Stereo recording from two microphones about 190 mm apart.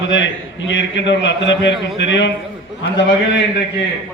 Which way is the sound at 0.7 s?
70° left (ahead or behind).